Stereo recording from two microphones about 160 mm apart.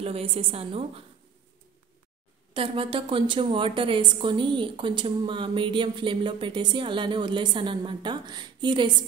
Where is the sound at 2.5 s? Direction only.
35° right (ahead or behind).